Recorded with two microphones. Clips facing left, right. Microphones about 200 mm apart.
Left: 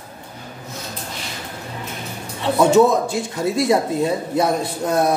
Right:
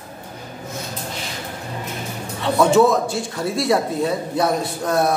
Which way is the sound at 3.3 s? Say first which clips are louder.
Left 2 dB; 20° left (ahead or behind).